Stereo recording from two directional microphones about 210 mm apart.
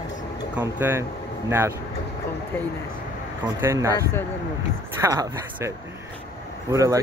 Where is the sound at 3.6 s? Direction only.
15° right (ahead or behind).